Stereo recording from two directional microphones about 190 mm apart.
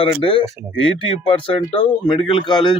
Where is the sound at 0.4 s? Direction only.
15° right (ahead or behind).